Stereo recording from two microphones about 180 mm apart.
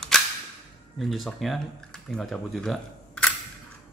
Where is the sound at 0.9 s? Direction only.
Centre (ahead or behind).